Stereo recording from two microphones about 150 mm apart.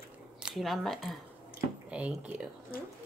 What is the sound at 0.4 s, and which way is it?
Speech, 5° right (ahead or behind).